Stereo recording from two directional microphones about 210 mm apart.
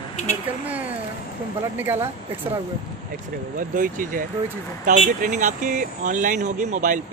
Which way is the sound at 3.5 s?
40° right (ahead or behind).